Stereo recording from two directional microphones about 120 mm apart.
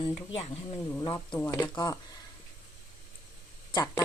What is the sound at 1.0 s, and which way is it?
Speech, 40° left (ahead or behind).